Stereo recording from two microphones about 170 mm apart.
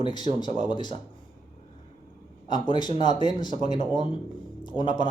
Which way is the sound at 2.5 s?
25° left (ahead or behind).